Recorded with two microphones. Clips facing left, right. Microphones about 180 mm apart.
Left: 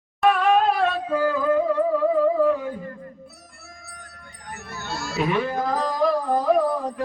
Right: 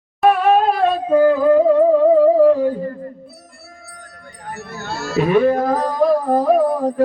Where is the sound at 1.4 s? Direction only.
30° right (ahead or behind).